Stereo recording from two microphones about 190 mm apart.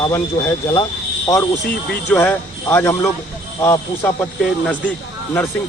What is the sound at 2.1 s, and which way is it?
Speech, 10° left (ahead or behind).